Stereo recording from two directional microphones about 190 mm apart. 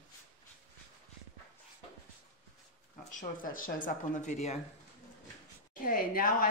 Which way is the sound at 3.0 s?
45° left (ahead or behind).